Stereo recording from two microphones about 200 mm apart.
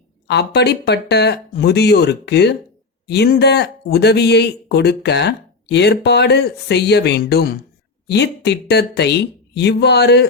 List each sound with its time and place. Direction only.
0.3 s speech: 60° left (ahead or behind)